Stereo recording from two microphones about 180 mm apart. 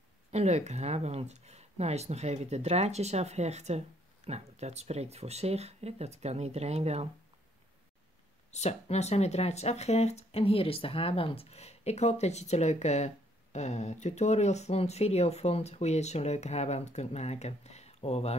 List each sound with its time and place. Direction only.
0.3 s speech: 40° right (ahead or behind)
8.5 s speech: 35° left (ahead or behind)